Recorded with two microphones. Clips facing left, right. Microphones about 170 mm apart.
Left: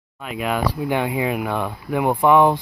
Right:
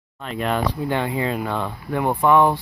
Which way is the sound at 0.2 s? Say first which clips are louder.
Even; 5° left (ahead or behind).